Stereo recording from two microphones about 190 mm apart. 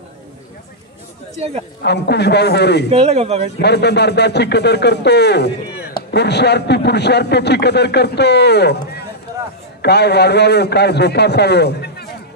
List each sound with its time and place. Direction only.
1.8 s a man's voice: 60° left (ahead or behind)
2.9 s speech: 35° right (ahead or behind)
3.6 s a man's voice: 60° left (ahead or behind)